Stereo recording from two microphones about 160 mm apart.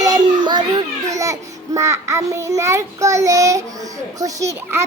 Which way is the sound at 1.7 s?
20° right (ahead or behind).